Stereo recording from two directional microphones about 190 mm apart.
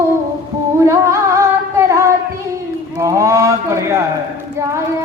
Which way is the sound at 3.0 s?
15° right (ahead or behind).